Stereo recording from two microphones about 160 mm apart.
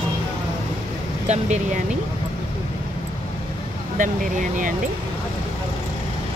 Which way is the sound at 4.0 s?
55° right (ahead or behind).